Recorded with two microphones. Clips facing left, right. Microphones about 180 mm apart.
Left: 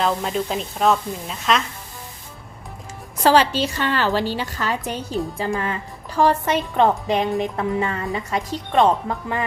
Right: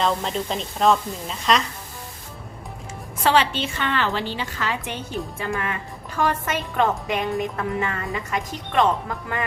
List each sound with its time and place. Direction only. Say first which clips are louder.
0.0 s a woman's voice: left 2 dB; 5° left (ahead or behind)
3.2 s a woman's voice: left 4 dB; 40° left (ahead or behind)